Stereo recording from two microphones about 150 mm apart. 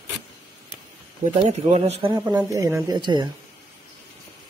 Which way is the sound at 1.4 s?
40° right (ahead or behind).